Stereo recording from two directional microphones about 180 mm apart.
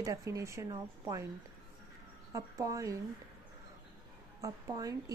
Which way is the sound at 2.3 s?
20° right (ahead or behind).